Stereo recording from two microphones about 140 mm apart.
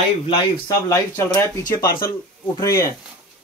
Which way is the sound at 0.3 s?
25° left (ahead or behind).